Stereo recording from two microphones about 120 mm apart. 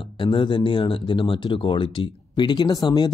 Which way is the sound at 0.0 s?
45° left (ahead or behind).